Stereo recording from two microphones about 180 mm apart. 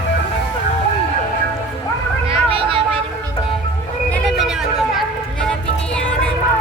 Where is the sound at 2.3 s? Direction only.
30° right (ahead or behind).